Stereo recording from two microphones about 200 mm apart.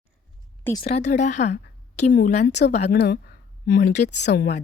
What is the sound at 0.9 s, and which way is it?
Speech, 35° left (ahead or behind).